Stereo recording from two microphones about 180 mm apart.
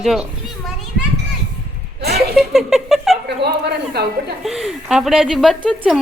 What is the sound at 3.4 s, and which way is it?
Speech, 65° right (ahead or behind).